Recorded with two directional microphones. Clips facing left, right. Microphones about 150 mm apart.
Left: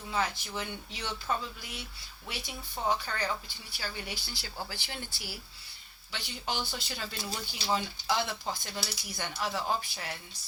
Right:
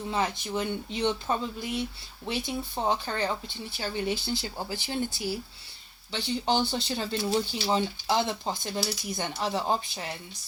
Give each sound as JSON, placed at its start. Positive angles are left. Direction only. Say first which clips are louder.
{"t": 0.1, "sound": "speech", "louder": "right 3 dB", "side_deg": -20}